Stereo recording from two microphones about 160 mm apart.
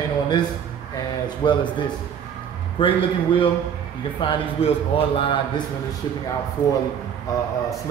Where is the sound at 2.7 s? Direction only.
35° left (ahead or behind).